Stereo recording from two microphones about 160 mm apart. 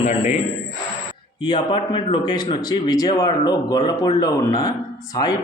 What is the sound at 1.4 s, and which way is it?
A man's voice, 30° left (ahead or behind).